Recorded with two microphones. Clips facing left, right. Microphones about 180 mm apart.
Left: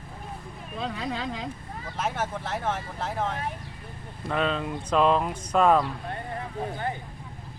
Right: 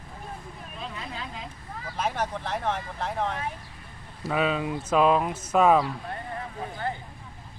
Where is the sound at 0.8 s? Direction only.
90° left.